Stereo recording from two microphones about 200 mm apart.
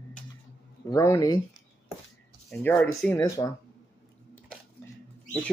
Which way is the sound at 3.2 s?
15° left (ahead or behind).